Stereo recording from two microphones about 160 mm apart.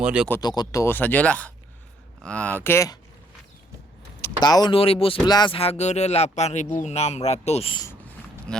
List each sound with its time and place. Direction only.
0.0 s speech: 5° right (ahead or behind)
0.3 s speech: 20° left (ahead or behind)
2.6 s speech: 20° left (ahead or behind)
4.2 s speech: 25° left (ahead or behind)
8.5 s speech: 5° left (ahead or behind)